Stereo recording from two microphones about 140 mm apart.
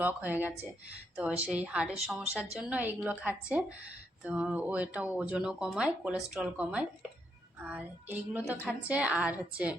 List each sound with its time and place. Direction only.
0.0 s speech: 10° right (ahead or behind)